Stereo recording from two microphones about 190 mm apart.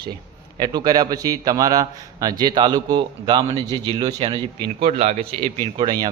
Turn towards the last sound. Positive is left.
turn(degrees=-20)  # may be behind; listen again after turning